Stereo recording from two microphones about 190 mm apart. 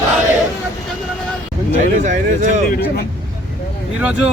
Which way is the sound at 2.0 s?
40° right (ahead or behind).